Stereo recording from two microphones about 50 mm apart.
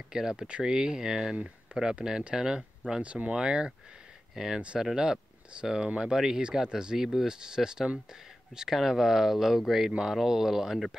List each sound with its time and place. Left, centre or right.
0.1 s speech: centre
1.3 s speech: right
2.0 s speech: centre